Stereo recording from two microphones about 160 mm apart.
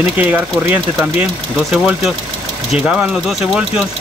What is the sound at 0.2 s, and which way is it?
Speech, 10° right (ahead or behind).